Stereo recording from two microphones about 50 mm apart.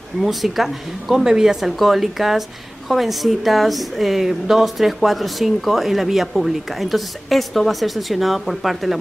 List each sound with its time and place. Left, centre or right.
0.2 s speech: centre